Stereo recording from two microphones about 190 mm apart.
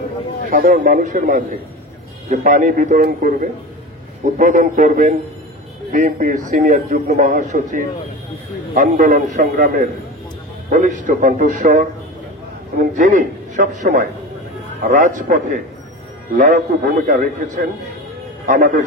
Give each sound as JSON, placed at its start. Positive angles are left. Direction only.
{"t": 0.5, "sound": "a man's voice", "side_deg": -45}
{"t": 12.9, "sound": "a man's voice", "side_deg": -40}